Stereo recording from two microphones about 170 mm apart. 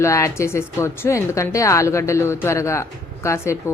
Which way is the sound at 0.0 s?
15° left (ahead or behind).